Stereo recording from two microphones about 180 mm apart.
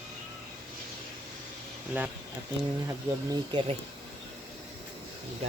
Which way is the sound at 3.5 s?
25° right (ahead or behind).